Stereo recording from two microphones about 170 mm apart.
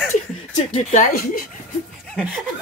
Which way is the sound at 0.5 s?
45° left (ahead or behind).